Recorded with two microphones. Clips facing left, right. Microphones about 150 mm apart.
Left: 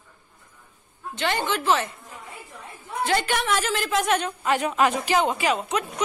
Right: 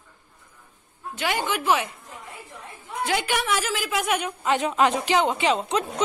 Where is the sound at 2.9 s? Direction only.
10° right (ahead or behind); by 6.0 s 30° right (ahead or behind).